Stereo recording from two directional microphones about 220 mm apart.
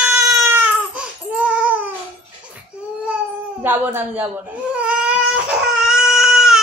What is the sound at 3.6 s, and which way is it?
Female singing, 10° right (ahead or behind).